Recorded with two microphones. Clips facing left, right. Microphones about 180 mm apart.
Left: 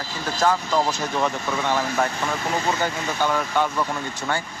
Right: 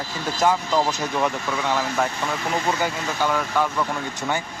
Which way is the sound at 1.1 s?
5° right (ahead or behind).